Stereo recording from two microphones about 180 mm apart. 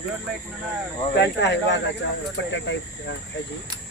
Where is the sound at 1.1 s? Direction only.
75° left (ahead or behind).